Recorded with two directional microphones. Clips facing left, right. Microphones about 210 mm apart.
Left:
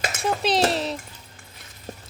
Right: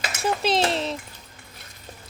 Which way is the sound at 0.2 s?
Centre (ahead or behind).